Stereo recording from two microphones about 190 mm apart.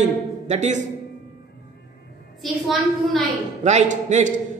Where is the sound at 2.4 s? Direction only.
Centre (ahead or behind).